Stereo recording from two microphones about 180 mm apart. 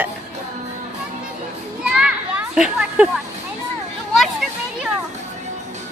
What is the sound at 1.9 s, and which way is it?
Children playing, 5° right (ahead or behind).